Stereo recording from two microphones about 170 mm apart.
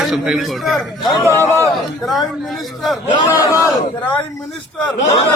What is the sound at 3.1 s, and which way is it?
Speech, 25° left (ahead or behind).